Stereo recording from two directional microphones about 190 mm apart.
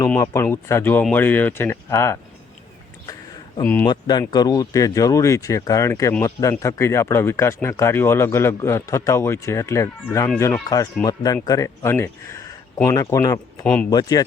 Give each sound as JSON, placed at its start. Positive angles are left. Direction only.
{"t": 0.0, "sound": "speech", "side_deg": 15}
{"t": 3.6, "sound": "speech", "side_deg": 10}
{"t": 3.8, "sound": "speech", "side_deg": 20}